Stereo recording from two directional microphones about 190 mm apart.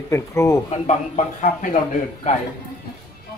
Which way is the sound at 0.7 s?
40° left (ahead or behind).